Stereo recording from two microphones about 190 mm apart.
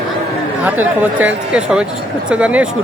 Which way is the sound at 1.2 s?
5° right (ahead or behind).